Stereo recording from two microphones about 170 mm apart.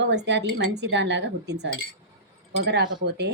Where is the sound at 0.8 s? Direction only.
90° right.